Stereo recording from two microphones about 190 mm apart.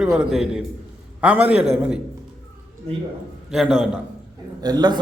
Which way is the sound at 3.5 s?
Centre (ahead or behind).